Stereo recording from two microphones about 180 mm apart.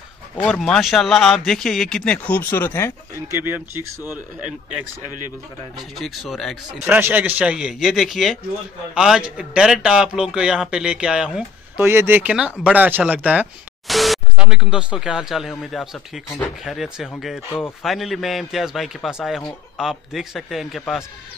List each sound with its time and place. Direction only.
0.4 s a man's voice: 5° left (ahead or behind)
3.3 s a man's voice: 15° right (ahead or behind)
5.9 s a man's voice: centre (ahead or behind)
6.9 s a man's voice: 10° right (ahead or behind)